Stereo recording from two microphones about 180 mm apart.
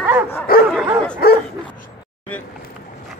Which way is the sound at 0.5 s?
55° left (ahead or behind).